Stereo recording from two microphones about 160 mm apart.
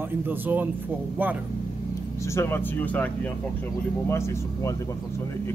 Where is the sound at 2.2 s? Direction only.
15° left (ahead or behind).